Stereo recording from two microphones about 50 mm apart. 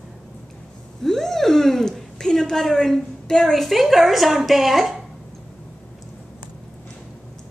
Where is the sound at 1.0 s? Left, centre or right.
Centre.